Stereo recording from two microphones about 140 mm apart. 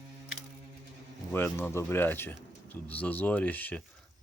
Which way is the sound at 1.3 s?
15° left (ahead or behind).